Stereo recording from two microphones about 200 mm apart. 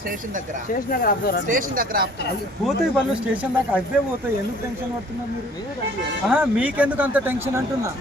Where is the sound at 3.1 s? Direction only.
5° right (ahead or behind).